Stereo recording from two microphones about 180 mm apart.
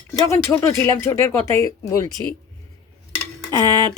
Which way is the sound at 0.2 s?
15° left (ahead or behind).